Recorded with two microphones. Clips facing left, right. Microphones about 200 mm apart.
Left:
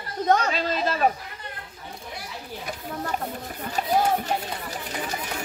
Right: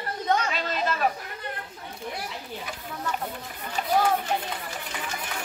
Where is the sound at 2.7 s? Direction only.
40° left (ahead or behind).